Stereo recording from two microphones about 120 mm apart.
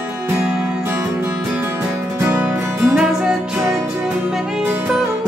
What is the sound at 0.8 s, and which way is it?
Music, 15° right (ahead or behind).